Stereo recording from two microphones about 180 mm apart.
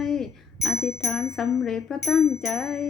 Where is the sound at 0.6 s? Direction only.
15° left (ahead or behind).